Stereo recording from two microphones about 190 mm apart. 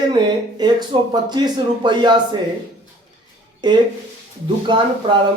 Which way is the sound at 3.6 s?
25° right (ahead or behind).